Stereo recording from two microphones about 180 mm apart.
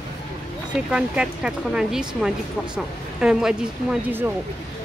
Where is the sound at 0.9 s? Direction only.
5° right (ahead or behind).